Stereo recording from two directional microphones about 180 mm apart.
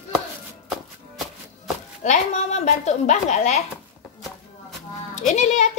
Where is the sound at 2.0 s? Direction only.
40° left (ahead or behind).